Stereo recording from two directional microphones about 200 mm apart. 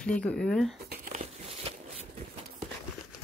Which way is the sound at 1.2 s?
30° right (ahead or behind).